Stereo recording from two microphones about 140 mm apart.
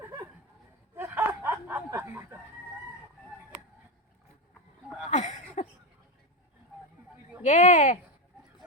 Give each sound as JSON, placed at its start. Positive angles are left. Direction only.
{"t": 0.9, "sound": "snicker", "side_deg": -10}
{"t": 5.1, "sound": "a sound", "side_deg": 60}
{"t": 7.4, "sound": "speech", "side_deg": 60}